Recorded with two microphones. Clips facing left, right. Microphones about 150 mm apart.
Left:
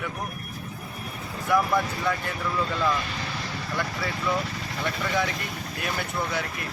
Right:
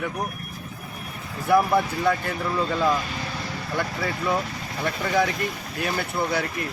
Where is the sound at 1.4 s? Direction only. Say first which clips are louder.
Right 4 dB; 35° right (ahead or behind).